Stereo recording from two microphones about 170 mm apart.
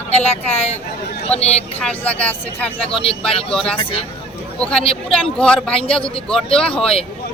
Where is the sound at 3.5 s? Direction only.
5° left (ahead or behind).